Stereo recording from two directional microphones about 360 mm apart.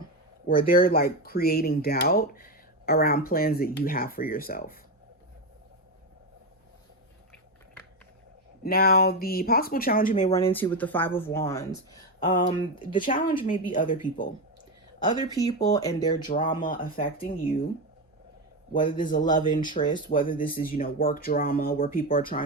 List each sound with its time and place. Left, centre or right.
0.4 s speech: centre
8.6 s speech: left
10.3 s speech: centre; by 14.3 s left
14.9 s speech: centre
16.3 s speech: left
18.7 s speech: centre